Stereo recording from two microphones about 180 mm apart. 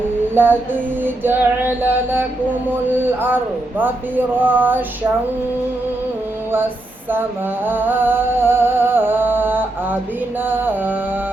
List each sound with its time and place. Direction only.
0.3 s speech: 10° right (ahead or behind)
7.6 s music: 10° right (ahead or behind)
10.4 s speech: 10° right (ahead or behind)